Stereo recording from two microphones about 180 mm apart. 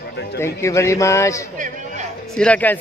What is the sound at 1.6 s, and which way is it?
Chatter, 45° right (ahead or behind).